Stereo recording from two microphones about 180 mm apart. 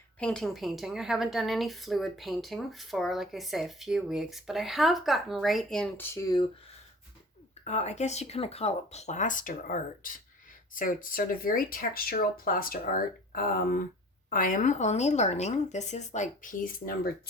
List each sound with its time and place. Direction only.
0.2 s a woman's voice: 5° left (ahead or behind)
6.1 s speech: 20° left (ahead or behind)
7.6 s speech: 40° left (ahead or behind)